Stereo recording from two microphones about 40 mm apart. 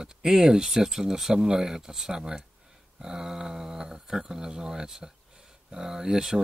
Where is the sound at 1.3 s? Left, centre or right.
Centre.